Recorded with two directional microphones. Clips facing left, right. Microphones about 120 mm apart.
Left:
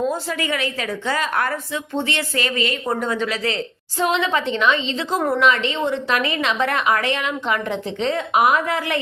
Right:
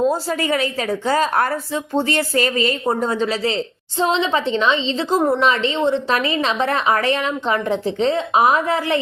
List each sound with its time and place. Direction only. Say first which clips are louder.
0.0 s a woman's voice: right 4 dB; 35° right (ahead or behind)